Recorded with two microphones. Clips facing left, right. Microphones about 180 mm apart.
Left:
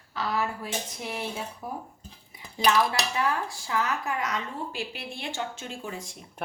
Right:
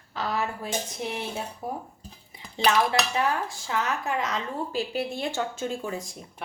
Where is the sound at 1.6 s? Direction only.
25° right (ahead or behind).